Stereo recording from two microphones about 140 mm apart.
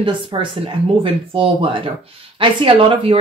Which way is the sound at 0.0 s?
35° right (ahead or behind).